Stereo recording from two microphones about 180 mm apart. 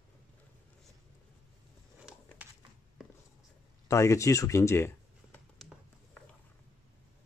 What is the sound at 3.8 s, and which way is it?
Speech, 15° left (ahead or behind).